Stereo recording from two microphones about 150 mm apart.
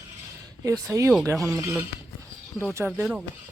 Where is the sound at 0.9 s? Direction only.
25° right (ahead or behind).